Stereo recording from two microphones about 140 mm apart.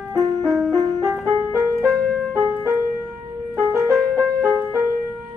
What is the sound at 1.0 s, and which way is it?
Music, 20° right (ahead or behind).